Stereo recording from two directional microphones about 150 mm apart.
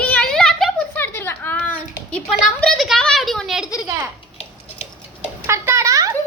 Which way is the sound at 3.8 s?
20° right (ahead or behind).